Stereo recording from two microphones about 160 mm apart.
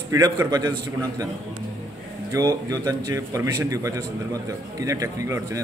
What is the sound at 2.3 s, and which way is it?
A man's voice, 25° right (ahead or behind).